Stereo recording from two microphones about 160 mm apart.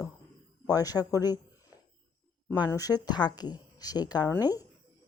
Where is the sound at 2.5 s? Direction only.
25° left (ahead or behind).